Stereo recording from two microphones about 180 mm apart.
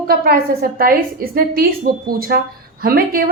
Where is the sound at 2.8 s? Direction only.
55° right (ahead or behind).